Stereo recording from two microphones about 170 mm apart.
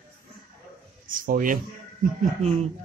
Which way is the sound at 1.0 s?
55° right (ahead or behind).